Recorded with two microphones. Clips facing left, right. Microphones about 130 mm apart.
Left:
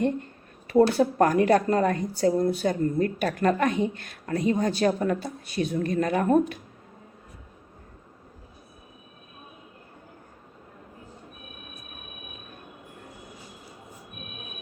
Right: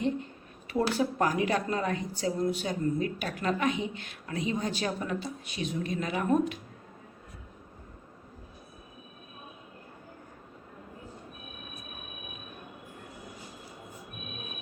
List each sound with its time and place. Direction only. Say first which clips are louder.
0.9 s a woman's voice: left 7 dB; 50° left (ahead or behind)